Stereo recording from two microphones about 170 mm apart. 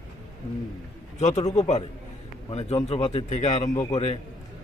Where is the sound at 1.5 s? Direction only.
40° left (ahead or behind).